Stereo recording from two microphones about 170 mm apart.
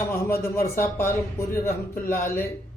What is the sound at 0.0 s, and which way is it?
A man's voice, 15° left (ahead or behind).